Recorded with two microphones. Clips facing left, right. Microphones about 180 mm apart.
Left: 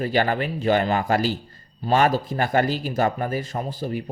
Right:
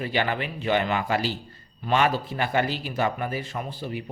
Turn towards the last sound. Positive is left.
turn(degrees=40)  # may be behind; listen again after turning